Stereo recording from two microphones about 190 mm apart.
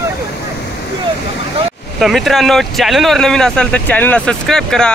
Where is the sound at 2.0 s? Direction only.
Centre (ahead or behind).